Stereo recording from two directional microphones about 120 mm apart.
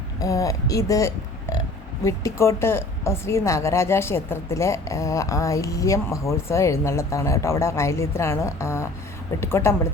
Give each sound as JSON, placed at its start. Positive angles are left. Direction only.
{"t": 0.2, "sound": "a woman's voice", "side_deg": 30}